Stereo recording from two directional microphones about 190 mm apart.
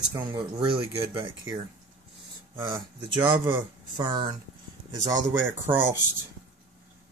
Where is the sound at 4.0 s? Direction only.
25° right (ahead or behind).